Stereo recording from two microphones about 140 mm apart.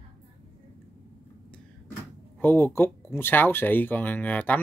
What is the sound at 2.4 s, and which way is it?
Speech, 15° left (ahead or behind).